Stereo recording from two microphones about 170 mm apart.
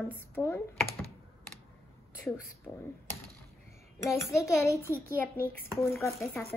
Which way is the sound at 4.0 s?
15° left (ahead or behind).